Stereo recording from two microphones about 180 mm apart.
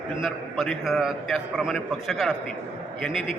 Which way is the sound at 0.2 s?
Centre (ahead or behind).